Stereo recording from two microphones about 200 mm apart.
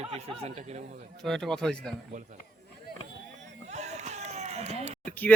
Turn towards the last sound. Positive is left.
turn(degrees=10)  # may be behind; listen again after turning